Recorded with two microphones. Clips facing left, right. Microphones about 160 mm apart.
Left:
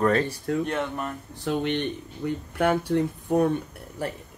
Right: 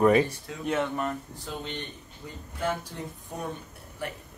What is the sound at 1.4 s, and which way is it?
Speech, 65° left (ahead or behind).